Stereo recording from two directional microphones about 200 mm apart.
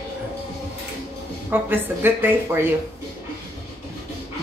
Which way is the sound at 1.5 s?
10° right (ahead or behind).